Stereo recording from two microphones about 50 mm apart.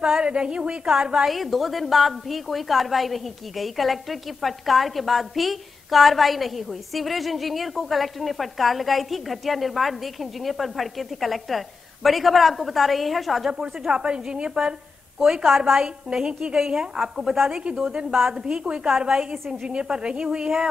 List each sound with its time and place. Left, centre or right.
0.0 s a woman's voice: centre
1.3 s a woman's voice: centre
13.5 s a woman's voice: centre